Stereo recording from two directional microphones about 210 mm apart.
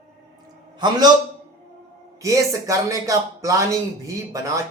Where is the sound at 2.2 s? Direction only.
15° right (ahead or behind).